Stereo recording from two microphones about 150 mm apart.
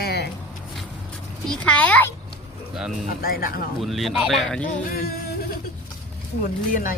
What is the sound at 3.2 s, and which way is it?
Speech, 75° left (ahead or behind).